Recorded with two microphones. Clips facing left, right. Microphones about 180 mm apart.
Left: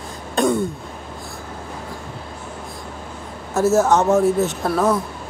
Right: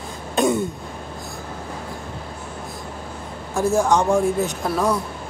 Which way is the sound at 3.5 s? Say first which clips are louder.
Left 3 dB; 5° left (ahead or behind).